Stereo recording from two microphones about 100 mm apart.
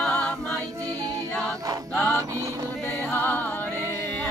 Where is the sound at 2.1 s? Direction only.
30° right (ahead or behind).